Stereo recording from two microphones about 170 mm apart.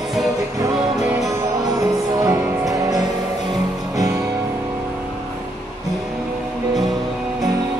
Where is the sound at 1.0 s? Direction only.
5° right (ahead or behind).